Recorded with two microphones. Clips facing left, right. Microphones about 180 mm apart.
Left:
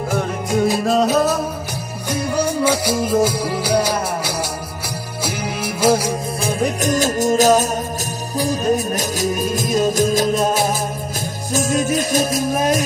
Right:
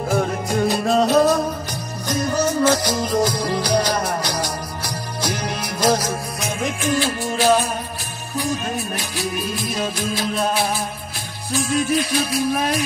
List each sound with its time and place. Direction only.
0.1 s music: centre (ahead or behind)
6.4 s music: 40° left (ahead or behind)